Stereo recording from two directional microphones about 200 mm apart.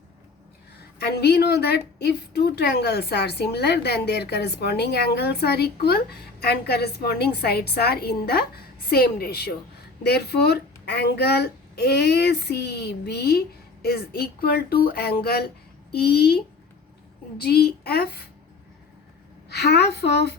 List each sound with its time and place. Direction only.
0.9 s a woman's voice: 55° left (ahead or behind)
17.4 s a woman's voice: 55° left (ahead or behind)
19.5 s a woman's voice: 55° left (ahead or behind)